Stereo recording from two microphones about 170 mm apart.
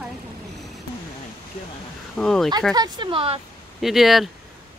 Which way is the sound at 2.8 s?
25° right (ahead or behind).